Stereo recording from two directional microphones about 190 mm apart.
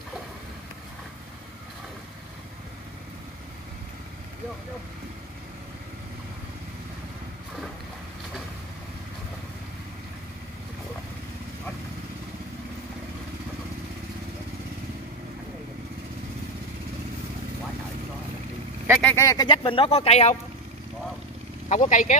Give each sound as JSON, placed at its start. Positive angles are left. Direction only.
{"t": 19.0, "sound": "speech", "side_deg": 15}
{"t": 21.6, "sound": "speech", "side_deg": 40}